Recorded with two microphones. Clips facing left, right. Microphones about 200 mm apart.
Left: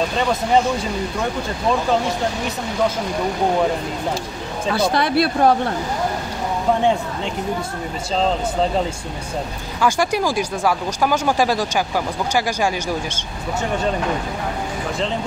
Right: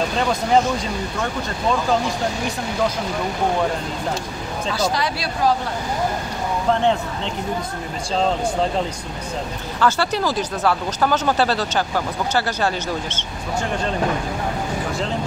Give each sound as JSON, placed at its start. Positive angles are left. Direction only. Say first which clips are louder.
{"t": 4.6, "sound": "speech", "louder": "left 4 dB", "side_deg": 55}
{"t": 6.7, "sound": "speech", "louder": "left 1 dB", "side_deg": 10}
{"t": 9.8, "sound": "speech", "louder": "left 1 dB", "side_deg": 10}